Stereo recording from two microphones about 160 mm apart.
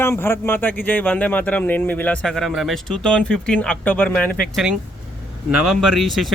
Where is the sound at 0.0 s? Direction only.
15° left (ahead or behind).